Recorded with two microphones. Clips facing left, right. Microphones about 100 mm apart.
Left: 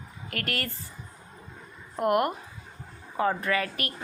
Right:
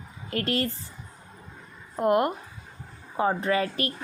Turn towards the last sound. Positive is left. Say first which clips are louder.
# right 3 dB
turn(degrees=-30)  # may be behind; listen again after turning